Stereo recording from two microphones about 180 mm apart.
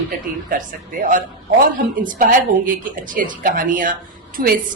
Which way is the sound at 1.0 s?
45° right (ahead or behind).